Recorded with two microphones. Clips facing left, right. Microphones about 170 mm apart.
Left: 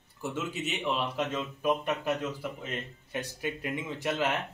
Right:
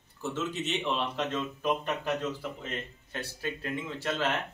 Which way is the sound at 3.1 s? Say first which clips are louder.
Left 2 dB; 15° left (ahead or behind).